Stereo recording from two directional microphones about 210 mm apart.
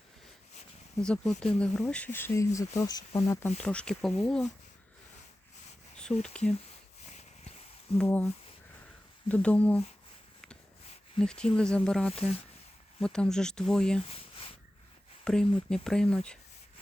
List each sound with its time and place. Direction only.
1.0 s speech: 5° left (ahead or behind)
6.2 s speech: 5° left (ahead or behind)
7.1 s a sound: 30° left (ahead or behind)
7.9 s speech: 10° left (ahead or behind)
9.3 s speech: 5° left (ahead or behind)
11.2 s speech: 5° left (ahead or behind)
12.1 s speech: 30° left (ahead or behind)
13.0 s speech: 5° left (ahead or behind)
14.0 s a sound: 25° left (ahead or behind)
15.2 s speech: 5° left (ahead or behind)